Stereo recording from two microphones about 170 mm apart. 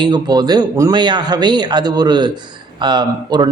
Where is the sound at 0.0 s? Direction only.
25° right (ahead or behind).